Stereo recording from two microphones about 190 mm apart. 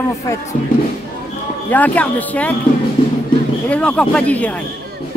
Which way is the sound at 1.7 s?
10° left (ahead or behind).